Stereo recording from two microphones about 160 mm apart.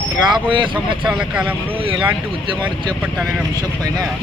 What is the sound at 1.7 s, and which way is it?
Speech, 35° right (ahead or behind).